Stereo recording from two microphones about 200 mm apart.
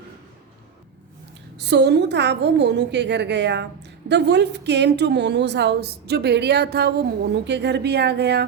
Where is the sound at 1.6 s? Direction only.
60° right (ahead or behind).